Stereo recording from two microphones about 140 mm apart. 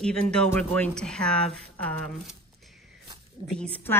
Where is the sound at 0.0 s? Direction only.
5° left (ahead or behind).